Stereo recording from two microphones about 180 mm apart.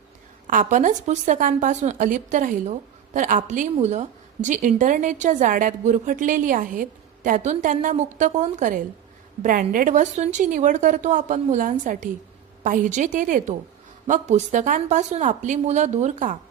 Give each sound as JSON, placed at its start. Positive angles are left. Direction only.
{"t": 0.4, "sound": "a woman's voice", "side_deg": -45}